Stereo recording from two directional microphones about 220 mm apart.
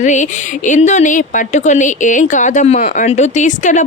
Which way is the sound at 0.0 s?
35° left (ahead or behind).